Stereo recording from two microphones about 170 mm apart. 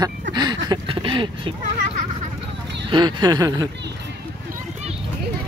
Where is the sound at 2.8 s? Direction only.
25° right (ahead or behind).